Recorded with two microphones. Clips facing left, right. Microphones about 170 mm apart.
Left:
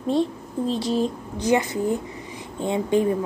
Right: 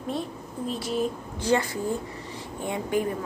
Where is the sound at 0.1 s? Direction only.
30° left (ahead or behind).